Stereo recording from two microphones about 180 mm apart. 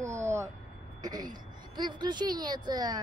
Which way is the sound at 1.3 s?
25° right (ahead or behind).